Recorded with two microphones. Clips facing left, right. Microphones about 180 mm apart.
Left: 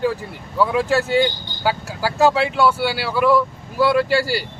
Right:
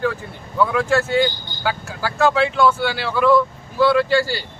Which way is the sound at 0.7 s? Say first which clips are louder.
Left 1 dB; 15° left (ahead or behind).